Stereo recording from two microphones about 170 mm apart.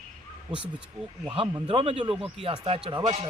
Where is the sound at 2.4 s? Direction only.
30° right (ahead or behind).